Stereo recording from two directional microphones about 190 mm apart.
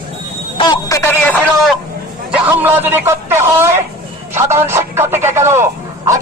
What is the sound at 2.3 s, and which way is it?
A man's voice, 10° right (ahead or behind).